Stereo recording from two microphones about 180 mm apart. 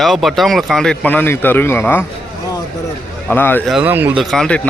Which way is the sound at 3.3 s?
10° left (ahead or behind).